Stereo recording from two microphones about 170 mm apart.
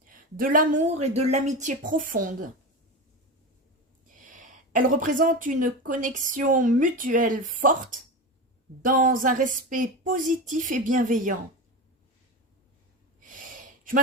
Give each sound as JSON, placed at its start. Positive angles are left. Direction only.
{"t": 0.1, "sound": "speech", "side_deg": -55}
{"t": 0.9, "sound": "a woman's voice", "side_deg": -40}
{"t": 4.2, "sound": "a sound", "side_deg": -50}
{"t": 5.2, "sound": "a woman's voice", "side_deg": -50}
{"t": 13.1, "sound": "snort", "side_deg": -50}